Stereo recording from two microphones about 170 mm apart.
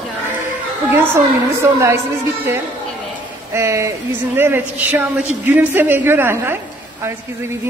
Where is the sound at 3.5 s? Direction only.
15° right (ahead or behind).